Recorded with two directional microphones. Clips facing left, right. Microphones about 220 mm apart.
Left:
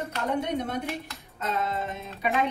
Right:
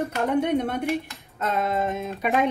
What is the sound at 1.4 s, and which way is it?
Music, 55° right (ahead or behind).